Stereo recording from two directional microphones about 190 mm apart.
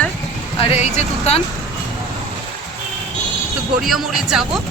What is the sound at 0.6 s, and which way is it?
Speech, 35° left (ahead or behind).